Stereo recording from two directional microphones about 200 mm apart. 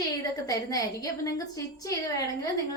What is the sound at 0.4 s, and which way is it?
A woman's voice, 15° left (ahead or behind).